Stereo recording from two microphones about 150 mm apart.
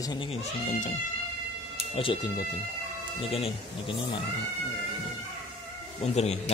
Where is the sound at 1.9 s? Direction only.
35° left (ahead or behind).